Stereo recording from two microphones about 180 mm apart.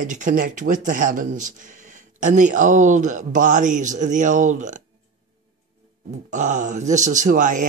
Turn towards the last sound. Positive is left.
turn(degrees=-45)  # may be behind; listen again after turning